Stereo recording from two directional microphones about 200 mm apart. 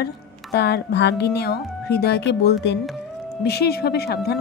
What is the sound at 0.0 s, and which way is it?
A woman's voice, 55° left (ahead or behind).